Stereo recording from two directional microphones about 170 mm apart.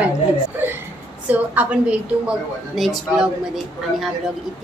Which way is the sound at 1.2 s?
10° right (ahead or behind).